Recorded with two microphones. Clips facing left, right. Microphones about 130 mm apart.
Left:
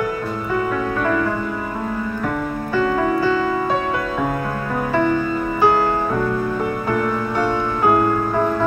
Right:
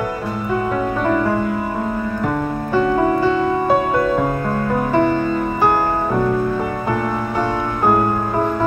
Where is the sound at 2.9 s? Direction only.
35° right (ahead or behind).